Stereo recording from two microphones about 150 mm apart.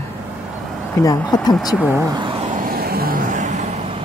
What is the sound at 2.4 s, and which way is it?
Vehicle, 65° right (ahead or behind).